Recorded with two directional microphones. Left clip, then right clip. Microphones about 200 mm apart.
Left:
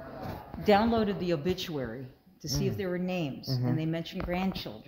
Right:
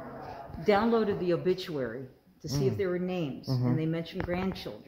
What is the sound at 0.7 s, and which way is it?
A woman's voice, 55° left (ahead or behind).